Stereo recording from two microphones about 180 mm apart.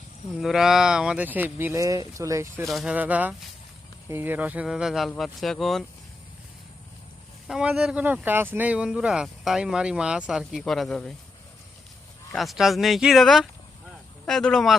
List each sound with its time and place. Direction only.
0.3 s speech: centre (ahead or behind)
2.6 s speech: 5° right (ahead or behind)
7.4 s speech: 5° right (ahead or behind)
12.3 s speech: centre (ahead or behind)